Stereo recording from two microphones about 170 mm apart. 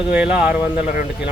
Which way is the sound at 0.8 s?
55° left (ahead or behind).